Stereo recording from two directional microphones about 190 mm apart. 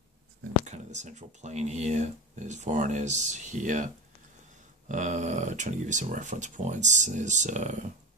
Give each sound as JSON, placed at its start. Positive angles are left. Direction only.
{"t": 0.7, "sound": "speech", "side_deg": -40}